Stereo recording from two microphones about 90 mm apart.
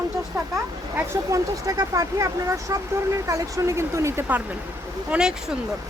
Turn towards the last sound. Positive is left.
turn(degrees=-10)  # may be behind; listen again after turning